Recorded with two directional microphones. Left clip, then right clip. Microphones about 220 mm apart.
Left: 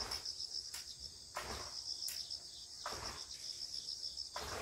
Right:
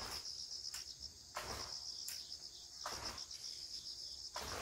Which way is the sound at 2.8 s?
45° right (ahead or behind).